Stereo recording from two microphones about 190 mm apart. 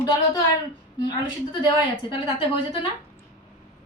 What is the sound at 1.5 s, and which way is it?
Speech, 25° left (ahead or behind).